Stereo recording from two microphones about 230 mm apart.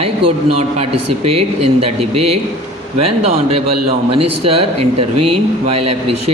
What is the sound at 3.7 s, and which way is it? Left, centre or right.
Speech, right.